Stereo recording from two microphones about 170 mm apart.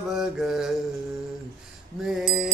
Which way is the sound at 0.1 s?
5° right (ahead or behind).